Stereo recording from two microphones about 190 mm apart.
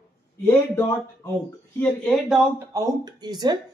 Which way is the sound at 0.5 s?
15° left (ahead or behind).